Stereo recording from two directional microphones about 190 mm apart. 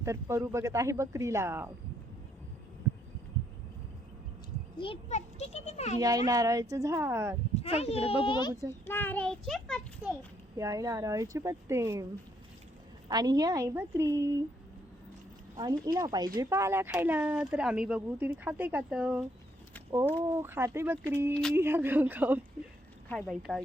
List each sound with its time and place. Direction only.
0.0 s speech: 15° right (ahead or behind)
4.8 s a child's voice: 30° left (ahead or behind)
6.0 s speech: 20° right (ahead or behind)
7.6 s a child's voice: 35° left (ahead or behind)
8.9 s a child's voice: 10° left (ahead or behind)
10.6 s speech: 15° right (ahead or behind)
13.1 s speech: 20° right (ahead or behind)
16.0 s speech: 20° right (ahead or behind)
20.2 s speech: 10° right (ahead or behind)
23.0 s a child's voice: 5° left (ahead or behind)